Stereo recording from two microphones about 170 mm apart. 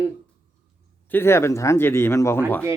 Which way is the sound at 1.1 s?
15° left (ahead or behind).